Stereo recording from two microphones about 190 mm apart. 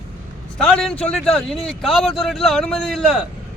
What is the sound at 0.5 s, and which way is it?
Speech, centre (ahead or behind).